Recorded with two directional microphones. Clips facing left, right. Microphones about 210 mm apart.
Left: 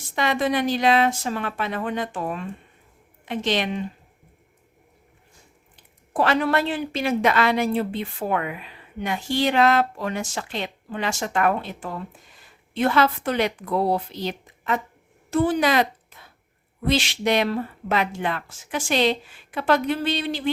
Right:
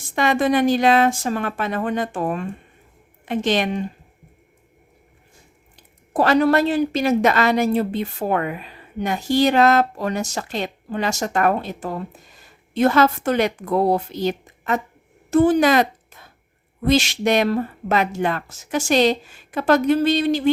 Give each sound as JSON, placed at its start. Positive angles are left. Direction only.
{"t": 0.2, "sound": "speech", "side_deg": -50}
{"t": 6.1, "sound": "a woman's voice", "side_deg": -40}